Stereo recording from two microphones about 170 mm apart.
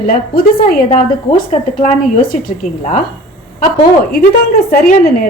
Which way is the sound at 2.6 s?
55° left (ahead or behind).